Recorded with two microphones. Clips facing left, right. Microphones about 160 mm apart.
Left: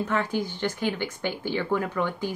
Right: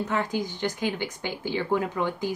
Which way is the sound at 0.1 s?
15° right (ahead or behind).